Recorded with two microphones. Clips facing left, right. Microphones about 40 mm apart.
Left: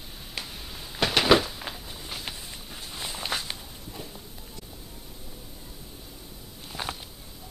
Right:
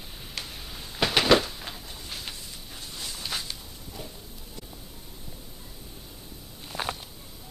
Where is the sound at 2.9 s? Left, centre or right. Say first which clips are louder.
Left 3 dB; left.